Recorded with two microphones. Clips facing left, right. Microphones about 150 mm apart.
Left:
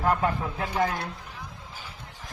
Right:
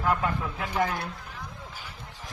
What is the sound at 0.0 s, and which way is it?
Speech, 35° left (ahead or behind).